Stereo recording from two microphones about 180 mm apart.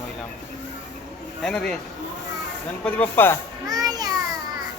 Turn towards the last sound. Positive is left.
turn(degrees=-20)  # may be behind; listen again after turning